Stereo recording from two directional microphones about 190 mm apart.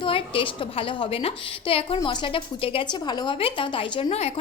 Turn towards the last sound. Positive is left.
turn(degrees=30)  # may be behind; listen again after turning